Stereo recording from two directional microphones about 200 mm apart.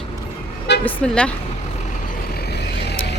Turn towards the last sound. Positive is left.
turn(degrees=55)  # may be behind; listen again after turning